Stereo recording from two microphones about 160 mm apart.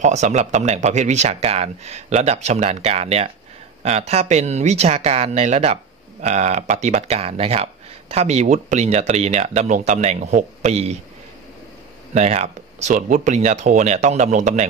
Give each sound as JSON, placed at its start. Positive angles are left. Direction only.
{"t": 0.0, "sound": "speech", "side_deg": -45}
{"t": 12.1, "sound": "speech", "side_deg": -45}